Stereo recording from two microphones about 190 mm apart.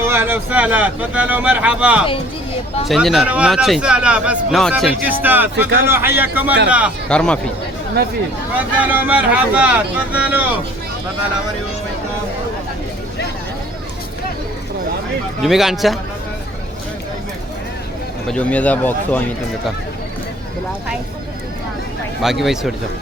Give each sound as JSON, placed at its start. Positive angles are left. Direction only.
{"t": 0.0, "sound": "a man's voice", "side_deg": -10}
{"t": 7.1, "sound": "a man's voice", "side_deg": 5}
{"t": 8.5, "sound": "speech", "side_deg": -10}
{"t": 15.4, "sound": "a man's voice", "side_deg": 0}
{"t": 18.3, "sound": "speech", "side_deg": 5}
{"t": 22.2, "sound": "a man's voice", "side_deg": 0}